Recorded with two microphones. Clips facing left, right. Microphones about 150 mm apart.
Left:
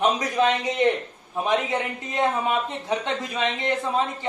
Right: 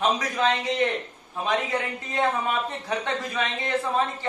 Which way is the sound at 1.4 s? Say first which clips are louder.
Left 2 dB; 20° left (ahead or behind).